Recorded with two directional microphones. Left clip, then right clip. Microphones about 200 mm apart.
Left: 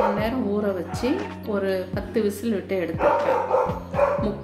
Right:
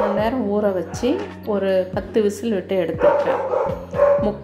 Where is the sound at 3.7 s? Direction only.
Centre (ahead or behind).